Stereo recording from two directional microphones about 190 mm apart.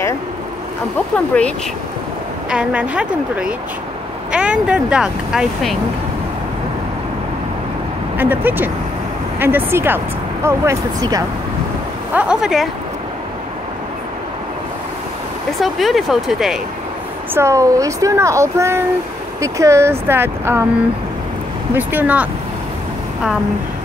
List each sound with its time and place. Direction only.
1.1 s speech: 5° left (ahead or behind)
2.5 s speech: 5° right (ahead or behind)
8.2 s speech: 10° right (ahead or behind)
12.1 s speech: 5° right (ahead or behind)
15.6 s speech: centre (ahead or behind)
17.3 s speech: 15° right (ahead or behind)
21.7 s speech: 10° right (ahead or behind)